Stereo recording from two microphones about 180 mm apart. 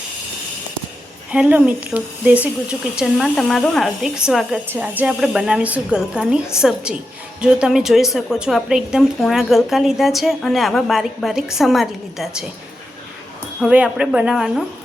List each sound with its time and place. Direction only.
1.3 s a woman's voice: 10° right (ahead or behind)
13.6 s a woman's voice: 5° right (ahead or behind)